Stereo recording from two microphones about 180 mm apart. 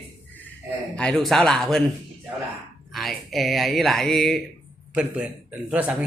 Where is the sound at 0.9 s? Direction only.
5° left (ahead or behind).